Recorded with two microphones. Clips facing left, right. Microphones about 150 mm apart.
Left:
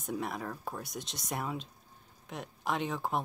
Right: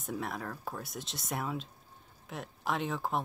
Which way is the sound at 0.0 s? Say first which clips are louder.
Left 1 dB; centre (ahead or behind).